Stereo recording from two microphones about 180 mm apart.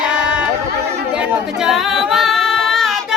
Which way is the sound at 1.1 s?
5° right (ahead or behind).